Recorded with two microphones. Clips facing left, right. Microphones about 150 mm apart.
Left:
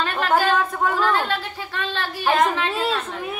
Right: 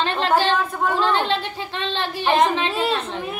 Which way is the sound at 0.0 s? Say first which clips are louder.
Right 1 dB; 25° right (ahead or behind).